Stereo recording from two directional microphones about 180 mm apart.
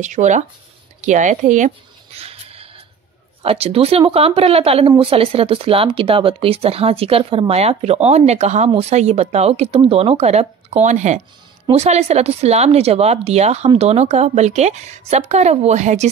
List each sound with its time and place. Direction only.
0.0 s speech: 40° right (ahead or behind)
2.1 s music: 35° right (ahead or behind)
3.4 s speech: 35° right (ahead or behind)